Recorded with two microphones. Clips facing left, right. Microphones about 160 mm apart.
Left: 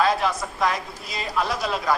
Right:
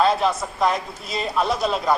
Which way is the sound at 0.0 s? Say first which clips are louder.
Right 2 dB; 25° right (ahead or behind).